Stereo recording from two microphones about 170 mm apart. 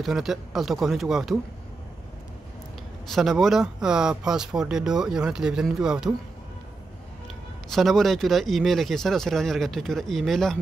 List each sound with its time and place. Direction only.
0.0 s speech: centre (ahead or behind)
3.1 s speech: centre (ahead or behind)
7.7 s speech: centre (ahead or behind)